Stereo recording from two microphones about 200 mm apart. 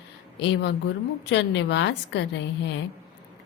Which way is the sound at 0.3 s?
60° left (ahead or behind).